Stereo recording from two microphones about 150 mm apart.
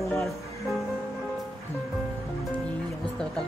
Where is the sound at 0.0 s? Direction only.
Centre (ahead or behind).